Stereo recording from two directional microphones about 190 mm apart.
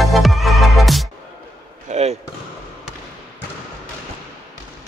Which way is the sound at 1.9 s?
35° right (ahead or behind).